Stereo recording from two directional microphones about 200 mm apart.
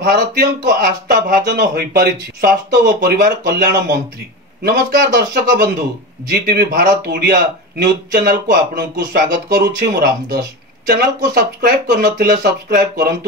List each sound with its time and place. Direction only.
0.0 s speech: 55° right (ahead or behind)